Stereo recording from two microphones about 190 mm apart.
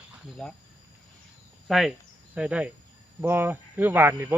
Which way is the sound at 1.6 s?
Centre (ahead or behind).